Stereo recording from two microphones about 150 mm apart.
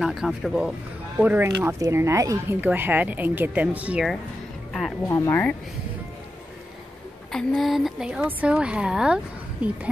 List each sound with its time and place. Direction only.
0.0 s speech: 5° right (ahead or behind)
1.2 s speech: 10° right (ahead or behind)
5.0 s speech: 20° left (ahead or behind)
7.3 s speech: centre (ahead or behind)